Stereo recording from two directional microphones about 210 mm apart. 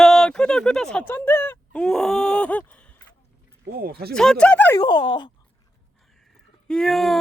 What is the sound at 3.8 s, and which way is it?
Speech, 45° right (ahead or behind).